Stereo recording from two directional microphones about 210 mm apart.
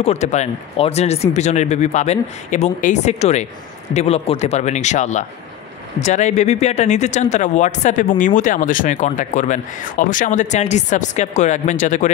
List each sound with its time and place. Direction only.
0.0 s speech: 30° left (ahead or behind)